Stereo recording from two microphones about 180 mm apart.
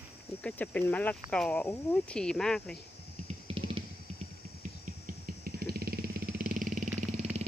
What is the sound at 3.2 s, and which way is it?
Vehicle, 30° right (ahead or behind).